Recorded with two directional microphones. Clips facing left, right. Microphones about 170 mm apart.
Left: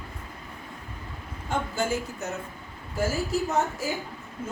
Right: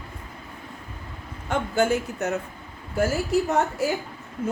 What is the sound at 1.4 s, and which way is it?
Speech, 65° right (ahead or behind).